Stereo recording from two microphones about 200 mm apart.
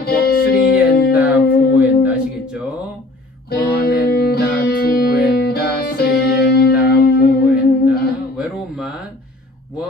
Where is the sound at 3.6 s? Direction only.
50° left (ahead or behind).